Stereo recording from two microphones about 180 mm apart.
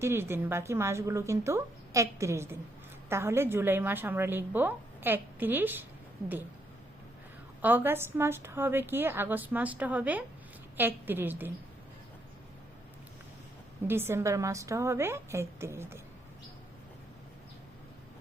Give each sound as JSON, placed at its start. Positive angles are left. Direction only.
{"t": 0.0, "sound": "a woman's voice", "side_deg": -10}
{"t": 7.6, "sound": "a woman's voice", "side_deg": -10}
{"t": 13.8, "sound": "a woman's voice", "side_deg": -10}